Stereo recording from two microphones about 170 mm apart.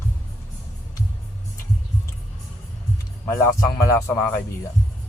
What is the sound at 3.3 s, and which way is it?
Speech, 15° left (ahead or behind).